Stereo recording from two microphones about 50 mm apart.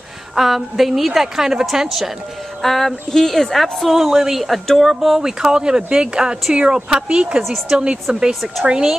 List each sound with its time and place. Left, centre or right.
0.4 s a woman's voice: centre